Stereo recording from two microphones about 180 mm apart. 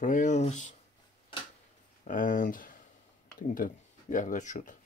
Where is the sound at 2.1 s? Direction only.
50° left (ahead or behind).